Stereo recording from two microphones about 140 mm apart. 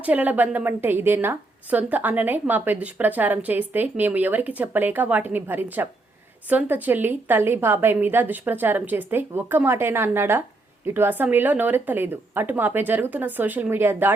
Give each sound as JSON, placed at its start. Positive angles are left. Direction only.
{"t": 0.0, "sound": "a woman's voice", "side_deg": -10}